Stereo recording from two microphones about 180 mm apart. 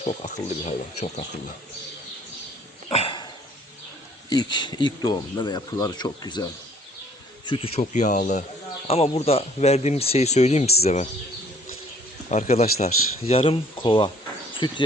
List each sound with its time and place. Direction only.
0.0 s speech: 35° left (ahead or behind)
2.9 s a sound: 30° left (ahead or behind)
4.3 s speech: 25° left (ahead or behind)
7.8 s speech: 45° left (ahead or behind)
12.3 s speech: 40° left (ahead or behind)